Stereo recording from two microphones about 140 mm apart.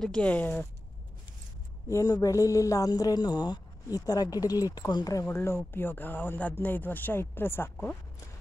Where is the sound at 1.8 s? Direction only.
25° left (ahead or behind).